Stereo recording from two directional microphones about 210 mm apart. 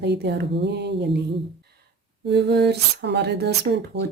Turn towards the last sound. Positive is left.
turn(degrees=-50)  # may be behind; listen again after turning